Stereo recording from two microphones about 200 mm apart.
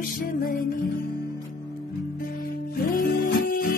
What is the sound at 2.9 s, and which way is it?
Music, 45° left (ahead or behind).